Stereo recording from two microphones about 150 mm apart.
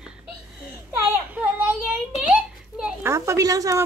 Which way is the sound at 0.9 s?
10° right (ahead or behind).